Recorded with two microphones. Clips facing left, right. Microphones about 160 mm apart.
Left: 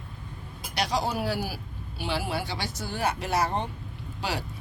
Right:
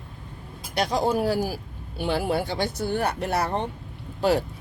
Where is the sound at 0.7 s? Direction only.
50° right (ahead or behind).